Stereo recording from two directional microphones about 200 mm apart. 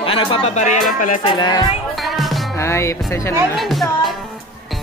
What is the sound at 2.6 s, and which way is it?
Music, 15° left (ahead or behind).